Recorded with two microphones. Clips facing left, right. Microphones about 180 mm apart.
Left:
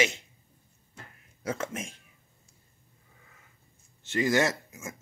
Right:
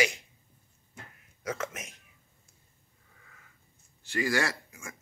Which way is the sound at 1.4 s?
30° left (ahead or behind).